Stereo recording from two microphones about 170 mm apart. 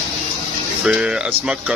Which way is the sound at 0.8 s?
5° right (ahead or behind).